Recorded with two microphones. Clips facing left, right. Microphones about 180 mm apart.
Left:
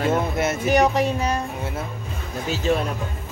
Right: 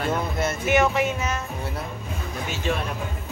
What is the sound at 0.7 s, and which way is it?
Speech, 35° left (ahead or behind).